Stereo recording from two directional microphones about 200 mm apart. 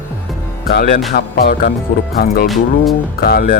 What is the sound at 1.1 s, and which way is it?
Speech, 45° left (ahead or behind).